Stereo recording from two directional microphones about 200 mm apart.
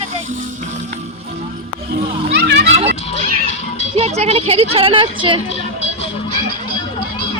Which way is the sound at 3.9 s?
30° right (ahead or behind).